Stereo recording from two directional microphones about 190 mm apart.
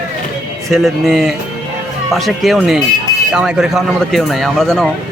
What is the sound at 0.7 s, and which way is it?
A man's voice, centre (ahead or behind).